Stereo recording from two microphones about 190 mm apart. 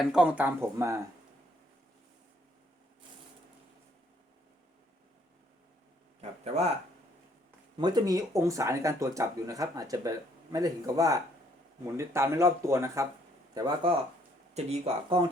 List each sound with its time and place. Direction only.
0.0 s speech: 5° right (ahead or behind)
6.4 s speech: 35° right (ahead or behind)
7.8 s speech: 20° right (ahead or behind)
14.5 s speech: 35° right (ahead or behind)